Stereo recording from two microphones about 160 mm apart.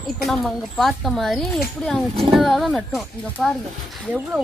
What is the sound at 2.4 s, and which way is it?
Speech, centre (ahead or behind).